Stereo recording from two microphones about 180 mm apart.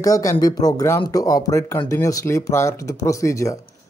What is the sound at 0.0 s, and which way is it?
Speech, 20° left (ahead or behind).